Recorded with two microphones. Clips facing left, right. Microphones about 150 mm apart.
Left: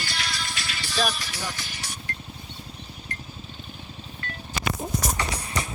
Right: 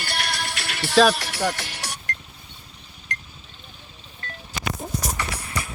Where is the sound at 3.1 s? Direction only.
90° right.